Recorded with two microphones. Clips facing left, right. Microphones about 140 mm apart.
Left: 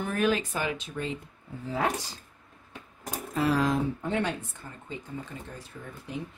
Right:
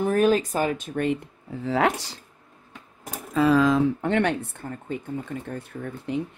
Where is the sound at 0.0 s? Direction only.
40° right (ahead or behind); by 2.1 s 80° right.